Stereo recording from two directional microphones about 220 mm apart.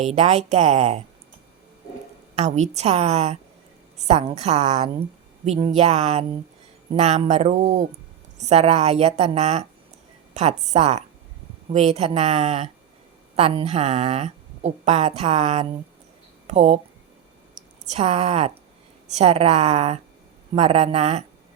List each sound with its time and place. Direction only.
0.0 s a woman's voice: 30° right (ahead or behind)
2.3 s a woman's voice: 30° right (ahead or behind)